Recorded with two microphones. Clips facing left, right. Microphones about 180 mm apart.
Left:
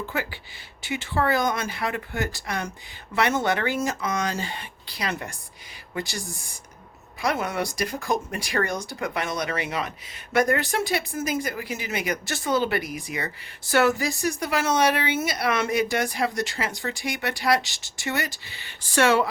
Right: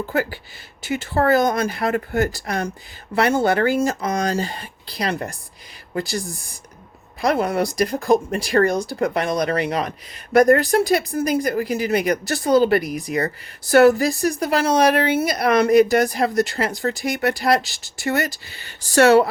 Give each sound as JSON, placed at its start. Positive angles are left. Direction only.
{"t": 0.0, "sound": "speech", "side_deg": -40}